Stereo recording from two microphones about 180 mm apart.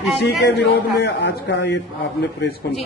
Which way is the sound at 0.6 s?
70° left (ahead or behind).